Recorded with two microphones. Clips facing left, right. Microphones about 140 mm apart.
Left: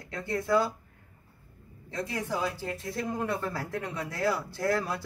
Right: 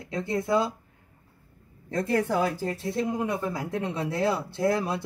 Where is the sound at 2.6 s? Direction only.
30° right (ahead or behind).